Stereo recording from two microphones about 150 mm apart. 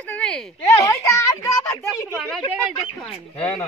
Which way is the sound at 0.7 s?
20° left (ahead or behind).